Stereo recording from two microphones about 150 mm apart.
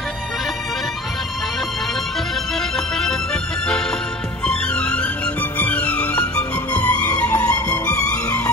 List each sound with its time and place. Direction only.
4.5 s music: 5° left (ahead or behind)